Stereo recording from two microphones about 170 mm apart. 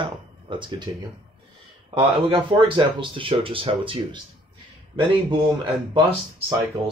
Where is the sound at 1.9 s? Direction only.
30° right (ahead or behind).